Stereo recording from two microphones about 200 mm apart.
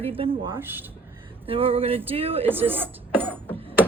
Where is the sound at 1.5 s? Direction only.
30° right (ahead or behind).